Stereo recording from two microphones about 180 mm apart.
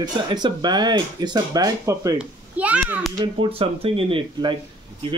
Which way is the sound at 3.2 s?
30° right (ahead or behind).